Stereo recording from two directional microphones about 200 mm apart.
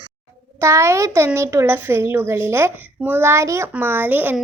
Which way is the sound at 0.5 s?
15° right (ahead or behind).